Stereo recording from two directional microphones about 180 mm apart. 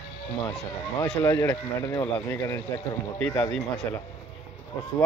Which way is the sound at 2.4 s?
15° left (ahead or behind).